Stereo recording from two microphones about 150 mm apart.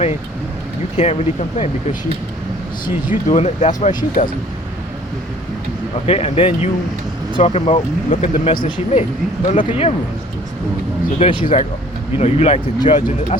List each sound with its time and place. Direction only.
0.9 s speech: 45° left (ahead or behind)
2.8 s speech: 60° left (ahead or behind)
6.1 s speech: 45° left (ahead or behind)
11.2 s speech: 35° left (ahead or behind)
12.1 s speech: 45° left (ahead or behind)